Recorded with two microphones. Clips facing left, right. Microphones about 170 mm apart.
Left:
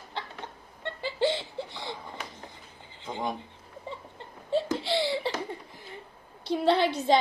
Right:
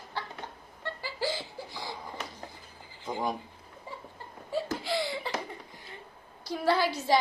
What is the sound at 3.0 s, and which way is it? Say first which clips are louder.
Speech: right 1 dB; 25° left (ahead or behind).